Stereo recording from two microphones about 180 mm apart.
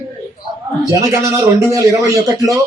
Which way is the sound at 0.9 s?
15° right (ahead or behind).